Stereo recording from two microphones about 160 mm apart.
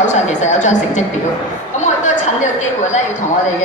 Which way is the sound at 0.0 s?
50° left (ahead or behind).